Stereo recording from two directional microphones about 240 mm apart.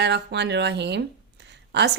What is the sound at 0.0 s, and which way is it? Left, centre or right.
A woman's voice, right.